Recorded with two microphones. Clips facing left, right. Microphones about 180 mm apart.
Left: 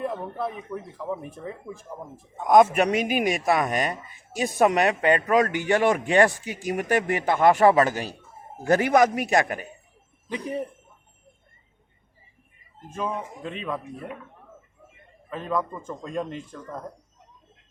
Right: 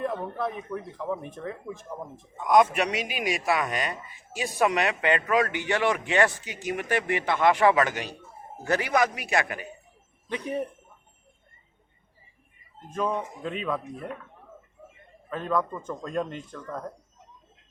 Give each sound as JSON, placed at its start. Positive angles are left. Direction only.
{"t": 0.0, "sound": "speech", "side_deg": 5}
{"t": 2.4, "sound": "speech", "side_deg": 45}
{"t": 12.9, "sound": "speech", "side_deg": 5}
{"t": 15.3, "sound": "speech", "side_deg": 5}